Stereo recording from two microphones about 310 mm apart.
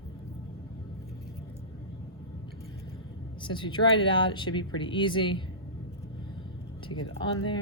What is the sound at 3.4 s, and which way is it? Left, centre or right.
Speech, centre.